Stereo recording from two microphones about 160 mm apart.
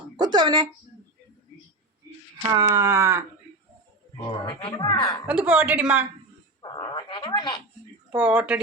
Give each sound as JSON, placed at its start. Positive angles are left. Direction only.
{"t": 0.2, "sound": "a sound", "side_deg": -25}
{"t": 2.6, "sound": "a woman's voice", "side_deg": -20}
{"t": 4.3, "sound": "speech", "side_deg": 30}
{"t": 5.2, "sound": "a woman's voice", "side_deg": -10}
{"t": 6.6, "sound": "speech", "side_deg": 25}
{"t": 8.1, "sound": "a woman's voice", "side_deg": -10}